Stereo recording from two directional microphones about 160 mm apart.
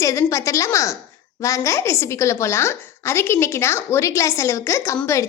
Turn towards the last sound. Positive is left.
turn(degrees=20)  # may be behind; listen again after turning